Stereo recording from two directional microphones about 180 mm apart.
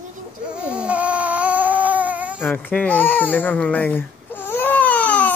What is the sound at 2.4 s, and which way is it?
Baby cry, 10° left (ahead or behind).